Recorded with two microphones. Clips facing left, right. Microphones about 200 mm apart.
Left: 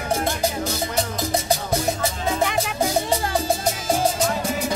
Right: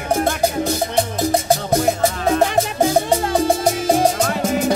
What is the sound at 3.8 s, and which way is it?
Music, 65° right (ahead or behind).